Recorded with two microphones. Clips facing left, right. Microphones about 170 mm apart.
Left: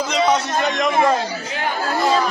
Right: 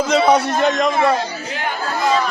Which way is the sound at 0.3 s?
35° right (ahead or behind).